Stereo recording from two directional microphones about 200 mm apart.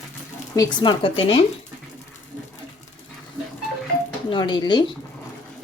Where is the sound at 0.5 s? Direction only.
20° left (ahead or behind).